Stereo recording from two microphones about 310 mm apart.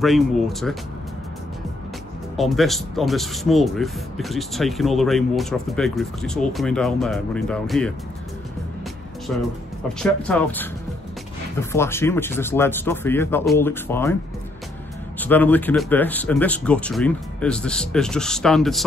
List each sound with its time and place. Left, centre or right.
0.0 s speech: centre
2.3 s speech: centre
9.3 s speech: centre
11.7 s speech: centre
15.1 s speech: centre